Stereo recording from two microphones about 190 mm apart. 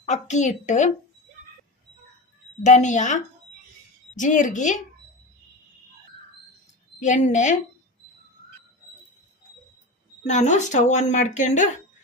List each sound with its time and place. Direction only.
0.0 s speech: 40° left (ahead or behind)
2.6 s speech: 40° left (ahead or behind)
7.0 s speech: 40° left (ahead or behind)
10.2 s speech: 40° left (ahead or behind)